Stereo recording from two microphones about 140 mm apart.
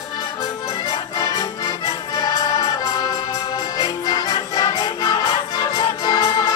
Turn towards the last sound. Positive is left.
turn(degrees=25)  # may be behind; listen again after turning